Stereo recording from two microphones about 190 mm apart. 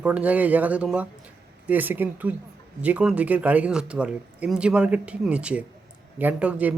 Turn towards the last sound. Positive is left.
turn(degrees=-5)  # may be behind; listen again after turning